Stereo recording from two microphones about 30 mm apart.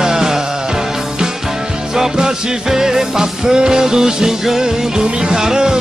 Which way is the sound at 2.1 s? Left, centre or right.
Right.